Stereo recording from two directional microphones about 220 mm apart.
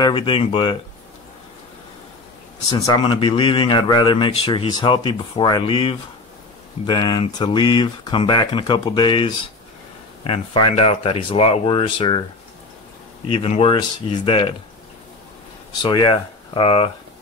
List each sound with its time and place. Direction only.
0.0 s speech: 20° left (ahead or behind)
2.9 s speech: 20° left (ahead or behind)
13.3 s speech: 25° left (ahead or behind)
15.8 s speech: 20° left (ahead or behind)